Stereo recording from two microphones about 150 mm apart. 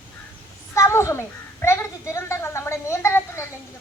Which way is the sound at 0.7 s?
20° left (ahead or behind).